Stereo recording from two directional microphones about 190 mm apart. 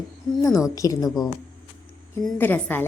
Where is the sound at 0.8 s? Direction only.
20° left (ahead or behind).